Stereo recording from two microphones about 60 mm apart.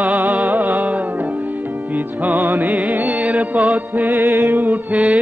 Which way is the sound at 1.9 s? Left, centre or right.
Right.